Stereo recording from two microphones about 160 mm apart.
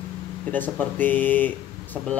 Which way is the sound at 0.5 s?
10° left (ahead or behind).